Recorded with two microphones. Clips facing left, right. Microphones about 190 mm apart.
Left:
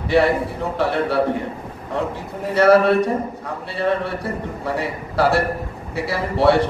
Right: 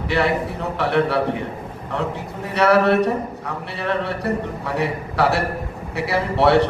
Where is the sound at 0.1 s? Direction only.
65° right (ahead or behind).